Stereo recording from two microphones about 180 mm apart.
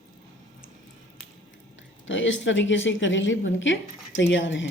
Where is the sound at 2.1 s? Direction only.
90° left.